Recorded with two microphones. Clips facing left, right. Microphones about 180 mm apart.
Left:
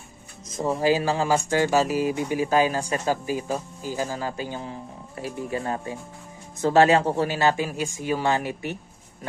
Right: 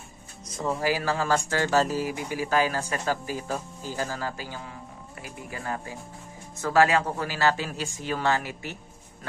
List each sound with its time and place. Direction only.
0.4 s speech: 20° left (ahead or behind)